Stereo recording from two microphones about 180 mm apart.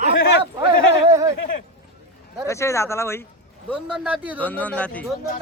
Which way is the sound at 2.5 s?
15° left (ahead or behind).